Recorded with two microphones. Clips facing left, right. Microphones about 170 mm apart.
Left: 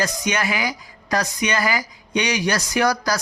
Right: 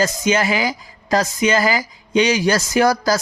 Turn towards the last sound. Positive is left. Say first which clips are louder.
# right 4 dB
turn(degrees=-25)  # may be behind; listen again after turning